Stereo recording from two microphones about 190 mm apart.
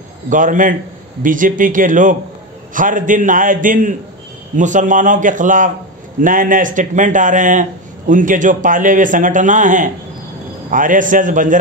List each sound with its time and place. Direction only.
0.3 s a man's voice: 45° right (ahead or behind)